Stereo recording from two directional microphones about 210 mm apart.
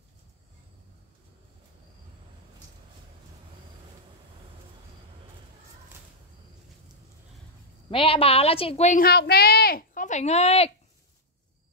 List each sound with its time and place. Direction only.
7.9 s a woman's voice: 25° left (ahead or behind)
9.0 s a woman's voice: 50° left (ahead or behind); by 10.7 s 30° left (ahead or behind)